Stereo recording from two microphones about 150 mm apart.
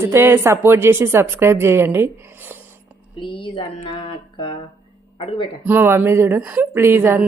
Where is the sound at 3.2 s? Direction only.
35° left (ahead or behind).